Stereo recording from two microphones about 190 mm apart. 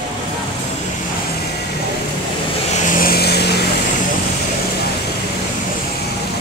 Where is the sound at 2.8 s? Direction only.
50° left (ahead or behind).